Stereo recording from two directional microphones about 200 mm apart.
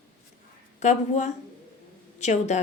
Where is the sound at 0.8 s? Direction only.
35° left (ahead or behind).